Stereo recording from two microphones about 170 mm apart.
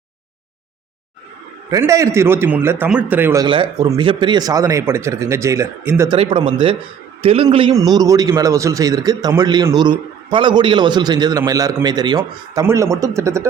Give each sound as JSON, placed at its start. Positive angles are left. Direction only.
{"t": 1.7, "sound": "speech", "side_deg": -20}
{"t": 3.4, "sound": "a man's voice", "side_deg": -30}
{"t": 6.1, "sound": "speech", "side_deg": -30}
{"t": 7.9, "sound": "a man's voice", "side_deg": -20}